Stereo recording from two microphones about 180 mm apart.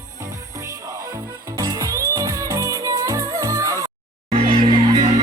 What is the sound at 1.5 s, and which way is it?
Music, 20° right (ahead or behind).